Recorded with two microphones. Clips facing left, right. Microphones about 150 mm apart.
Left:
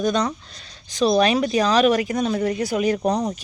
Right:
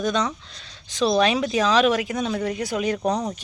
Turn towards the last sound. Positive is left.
turn(degrees=0)  # may be behind; listen again after turning